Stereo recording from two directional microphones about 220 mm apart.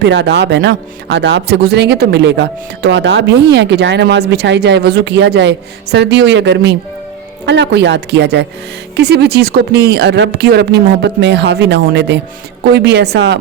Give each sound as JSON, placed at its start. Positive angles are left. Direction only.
{"t": 0.0, "sound": "speech", "side_deg": -50}